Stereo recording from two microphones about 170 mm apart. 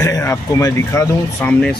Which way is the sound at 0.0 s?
15° left (ahead or behind).